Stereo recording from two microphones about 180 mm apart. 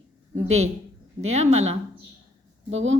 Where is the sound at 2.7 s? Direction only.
90° right.